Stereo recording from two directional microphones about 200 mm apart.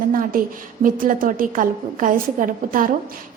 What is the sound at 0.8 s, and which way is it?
A woman's voice, 45° right (ahead or behind).